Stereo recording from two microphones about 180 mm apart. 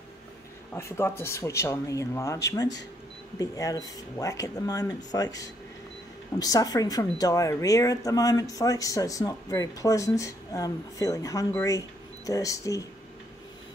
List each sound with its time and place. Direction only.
0.7 s speech: 15° left (ahead or behind)